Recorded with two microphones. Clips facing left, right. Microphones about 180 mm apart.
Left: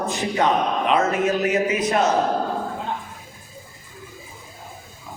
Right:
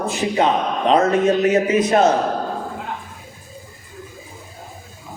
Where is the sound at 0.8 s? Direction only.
35° right (ahead or behind).